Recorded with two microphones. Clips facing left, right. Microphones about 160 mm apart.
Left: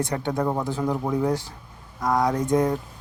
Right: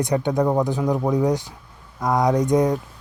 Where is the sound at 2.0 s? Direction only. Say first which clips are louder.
Right 3 dB; 20° right (ahead or behind).